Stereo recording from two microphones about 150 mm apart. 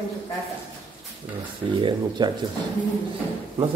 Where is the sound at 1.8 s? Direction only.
30° right (ahead or behind).